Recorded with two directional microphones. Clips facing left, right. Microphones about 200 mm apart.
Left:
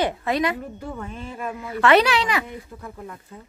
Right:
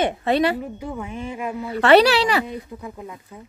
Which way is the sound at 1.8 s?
35° right (ahead or behind).